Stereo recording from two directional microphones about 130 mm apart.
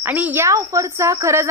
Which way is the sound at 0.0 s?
15° right (ahead or behind).